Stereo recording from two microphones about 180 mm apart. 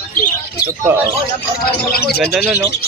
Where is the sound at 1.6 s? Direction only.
60° left (ahead or behind).